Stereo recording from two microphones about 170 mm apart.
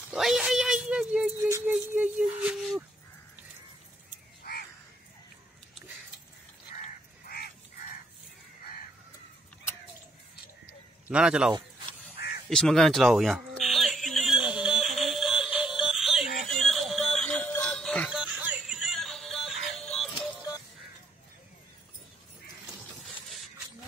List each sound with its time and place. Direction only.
0.1 s a sound: 5° right (ahead or behind)
4.4 s crow: 65° left (ahead or behind)
7.2 s crow: 65° left (ahead or behind)
11.1 s a man's voice: 5° right (ahead or behind)
12.4 s a sound: centre (ahead or behind)
16.3 s music: centre (ahead or behind)